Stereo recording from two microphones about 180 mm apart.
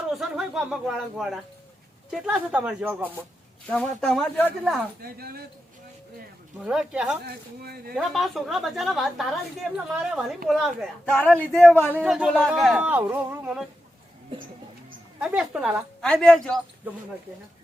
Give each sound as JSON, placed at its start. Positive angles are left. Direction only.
{"t": 0.1, "sound": "a woman's voice", "side_deg": 0}
{"t": 3.7, "sound": "a woman's voice", "side_deg": 5}
{"t": 5.0, "sound": "speech", "side_deg": -55}
{"t": 6.6, "sound": "a woman's voice", "side_deg": -5}
{"t": 7.3, "sound": "speech", "side_deg": -60}
{"t": 7.9, "sound": "a woman's voice", "side_deg": 0}
{"t": 12.0, "sound": "a woman's voice", "side_deg": -5}
{"t": 15.2, "sound": "a woman's voice", "side_deg": -5}